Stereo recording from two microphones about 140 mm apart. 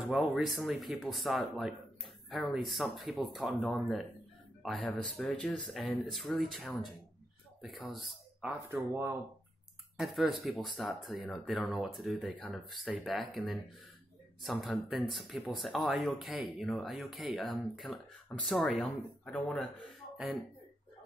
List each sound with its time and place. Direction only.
0.1 s speech: centre (ahead or behind)
8.7 s speech: 15° right (ahead or behind)
9.9 s speech: centre (ahead or behind)
14.4 s speech: centre (ahead or behind)